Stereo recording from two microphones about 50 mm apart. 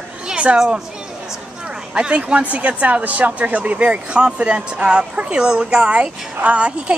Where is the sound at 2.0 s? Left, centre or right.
Right.